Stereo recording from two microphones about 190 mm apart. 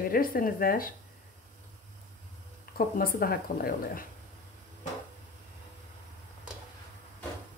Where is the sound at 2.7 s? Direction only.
50° left (ahead or behind).